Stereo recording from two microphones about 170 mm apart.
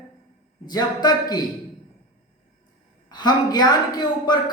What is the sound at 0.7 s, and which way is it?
Speech, 25° left (ahead or behind).